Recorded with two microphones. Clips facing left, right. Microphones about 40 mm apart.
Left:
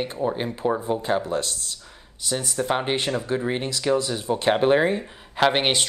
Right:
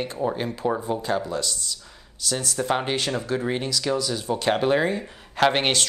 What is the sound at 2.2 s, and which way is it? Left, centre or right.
Speech, left.